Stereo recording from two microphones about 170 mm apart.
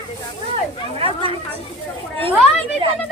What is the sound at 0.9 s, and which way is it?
Speech, 35° right (ahead or behind).